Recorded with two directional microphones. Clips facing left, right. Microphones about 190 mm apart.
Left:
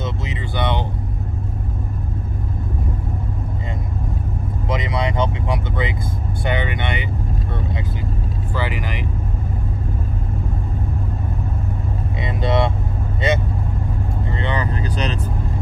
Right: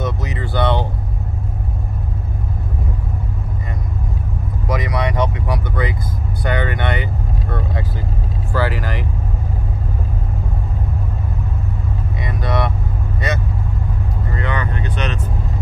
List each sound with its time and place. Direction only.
0.0 s speech: 25° left (ahead or behind)
4.6 s speech: 25° left (ahead or behind)
8.5 s speech: 20° left (ahead or behind)
12.2 s speech: 25° left (ahead or behind)